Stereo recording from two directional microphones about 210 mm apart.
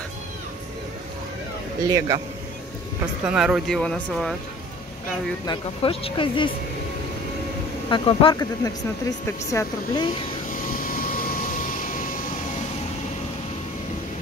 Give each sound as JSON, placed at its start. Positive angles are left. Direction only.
{"t": 1.9, "sound": "a man's voice", "side_deg": -15}
{"t": 3.3, "sound": "speech", "side_deg": -5}
{"t": 5.5, "sound": "speech", "side_deg": 25}
{"t": 7.9, "sound": "speech", "side_deg": 25}
{"t": 10.5, "sound": "vehicle", "side_deg": 40}